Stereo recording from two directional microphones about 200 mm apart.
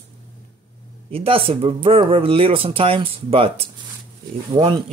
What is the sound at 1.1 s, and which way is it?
Speech, 25° right (ahead or behind).